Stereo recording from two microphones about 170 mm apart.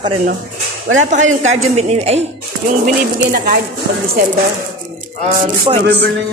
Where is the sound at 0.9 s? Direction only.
45° right (ahead or behind).